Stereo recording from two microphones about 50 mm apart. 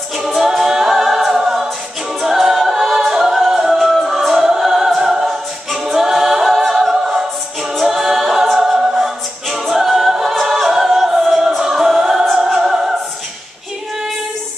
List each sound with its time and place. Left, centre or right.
0.4 s a capella: centre
3.1 s music: centre
4.5 s choir: centre
7.8 s a capella: centre
12.5 s opera: centre